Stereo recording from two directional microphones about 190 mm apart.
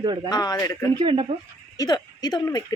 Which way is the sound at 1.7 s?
20° left (ahead or behind).